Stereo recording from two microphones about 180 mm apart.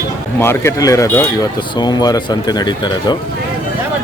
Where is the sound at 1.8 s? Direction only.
20° left (ahead or behind).